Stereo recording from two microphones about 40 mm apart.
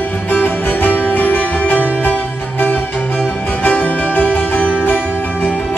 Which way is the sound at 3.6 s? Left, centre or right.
Left.